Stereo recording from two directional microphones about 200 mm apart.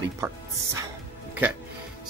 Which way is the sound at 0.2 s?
15° right (ahead or behind).